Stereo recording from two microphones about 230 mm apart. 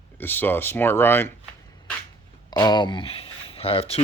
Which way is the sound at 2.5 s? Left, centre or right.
Centre.